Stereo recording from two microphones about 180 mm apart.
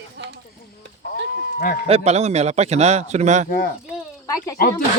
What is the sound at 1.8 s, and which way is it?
Speech, 35° right (ahead or behind).